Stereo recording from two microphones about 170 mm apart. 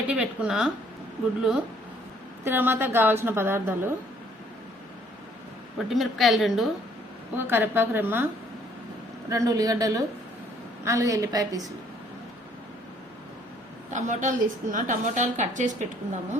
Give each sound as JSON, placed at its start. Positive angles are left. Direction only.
{"t": 0.1, "sound": "a woman's voice", "side_deg": -5}
{"t": 5.9, "sound": "a woman's voice", "side_deg": 0}
{"t": 7.3, "sound": "a woman's voice", "side_deg": -10}
{"t": 9.3, "sound": "a woman's voice", "side_deg": -20}
{"t": 13.9, "sound": "a woman's voice", "side_deg": -45}